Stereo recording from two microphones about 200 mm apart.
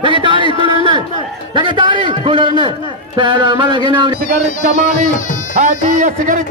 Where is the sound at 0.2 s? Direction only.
25° right (ahead or behind).